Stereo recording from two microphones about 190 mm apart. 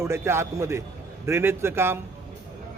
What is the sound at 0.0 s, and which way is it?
A man's voice, 15° right (ahead or behind).